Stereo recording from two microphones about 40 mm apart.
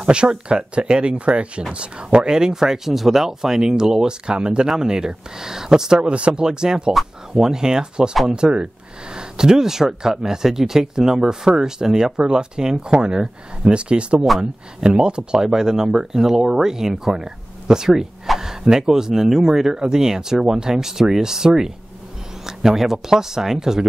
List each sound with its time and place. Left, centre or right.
0.0 s speech: right
5.9 s speech: right; by 23.9 s centre